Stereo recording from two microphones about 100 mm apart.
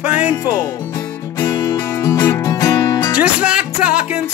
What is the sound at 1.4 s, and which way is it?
Music, 40° left (ahead or behind).